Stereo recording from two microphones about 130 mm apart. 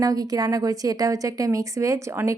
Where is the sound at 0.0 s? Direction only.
30° right (ahead or behind).